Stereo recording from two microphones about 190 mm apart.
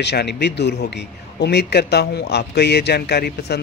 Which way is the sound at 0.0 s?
60° left (ahead or behind).